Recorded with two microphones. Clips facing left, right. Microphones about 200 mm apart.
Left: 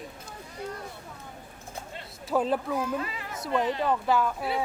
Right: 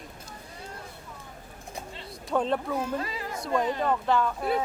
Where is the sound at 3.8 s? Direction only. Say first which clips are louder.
Even; 5° left (ahead or behind).